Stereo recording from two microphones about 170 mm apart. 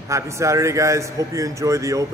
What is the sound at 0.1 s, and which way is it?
A man's voice, 15° right (ahead or behind).